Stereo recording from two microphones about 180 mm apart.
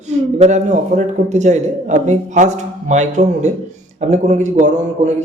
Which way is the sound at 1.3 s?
40° right (ahead or behind).